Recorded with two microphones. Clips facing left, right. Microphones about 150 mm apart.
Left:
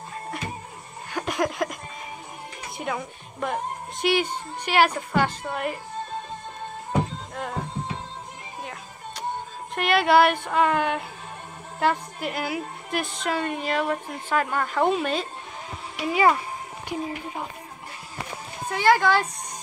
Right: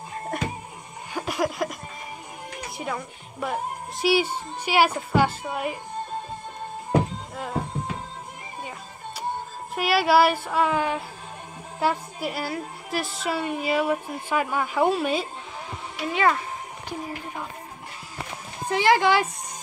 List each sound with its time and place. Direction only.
0.3 s music: 50° right (ahead or behind)
1.1 s a sound: 5° right (ahead or behind)
2.8 s speech: centre (ahead or behind)
9.8 s a woman's voice: 5° right (ahead or behind)
16.1 s a child's voice: 10° left (ahead or behind)
18.7 s speech: 20° right (ahead or behind)